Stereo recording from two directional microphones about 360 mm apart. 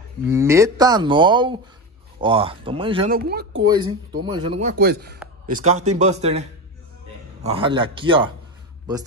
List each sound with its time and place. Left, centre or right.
0.3 s speech: centre; by 3.6 s right
4.2 s speech: centre
7.4 s speech: centre